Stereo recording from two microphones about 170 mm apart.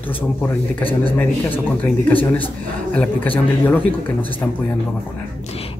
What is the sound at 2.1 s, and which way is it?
Speech, 10° left (ahead or behind).